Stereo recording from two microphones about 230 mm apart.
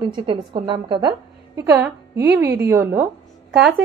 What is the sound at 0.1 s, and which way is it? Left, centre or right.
A woman's voice, right.